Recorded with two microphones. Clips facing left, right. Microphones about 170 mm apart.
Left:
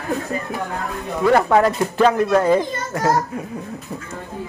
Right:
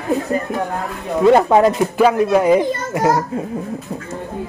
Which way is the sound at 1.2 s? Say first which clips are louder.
Right 4 dB; 20° right (ahead or behind).